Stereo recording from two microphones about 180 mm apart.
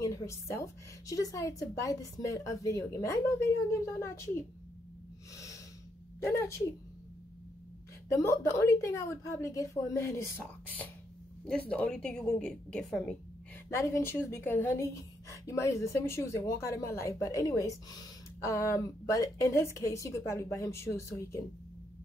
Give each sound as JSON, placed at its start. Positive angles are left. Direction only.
{"t": 0.0, "sound": "a woman's voice", "side_deg": 15}
{"t": 5.3, "sound": "snort", "side_deg": 20}
{"t": 8.1, "sound": "a woman's voice", "side_deg": 15}
{"t": 13.7, "sound": "a woman's voice", "side_deg": 15}